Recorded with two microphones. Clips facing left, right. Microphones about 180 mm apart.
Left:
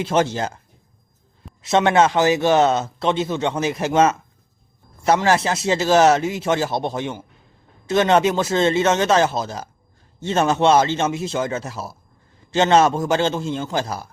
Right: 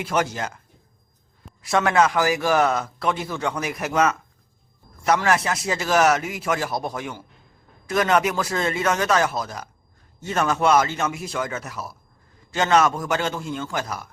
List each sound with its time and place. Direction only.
0.0 s speech: 25° left (ahead or behind)
1.6 s speech: 25° left (ahead or behind)